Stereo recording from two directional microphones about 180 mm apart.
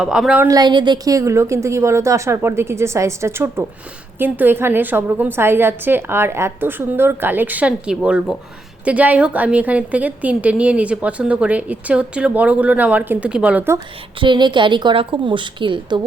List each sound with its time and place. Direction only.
0.0 s a woman's voice: 5° right (ahead or behind)
0.4 s a woman's voice: 20° right (ahead or behind)
14.2 s a woman's voice: 25° right (ahead or behind)